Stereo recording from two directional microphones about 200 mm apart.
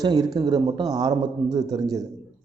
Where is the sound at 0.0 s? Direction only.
20° right (ahead or behind).